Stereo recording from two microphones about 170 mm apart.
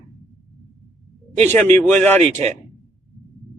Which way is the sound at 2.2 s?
35° right (ahead or behind).